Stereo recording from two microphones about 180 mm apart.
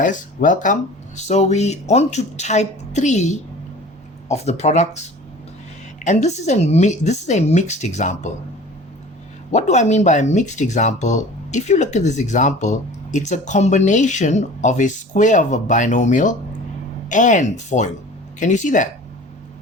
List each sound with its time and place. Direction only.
0.0 s speech: 45° left (ahead or behind)
9.5 s speech: 40° left (ahead or behind)